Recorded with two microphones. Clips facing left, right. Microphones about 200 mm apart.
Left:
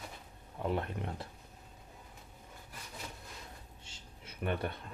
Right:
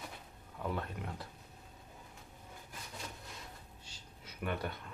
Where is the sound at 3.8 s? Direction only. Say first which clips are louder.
Left 1 dB; 25° left (ahead or behind).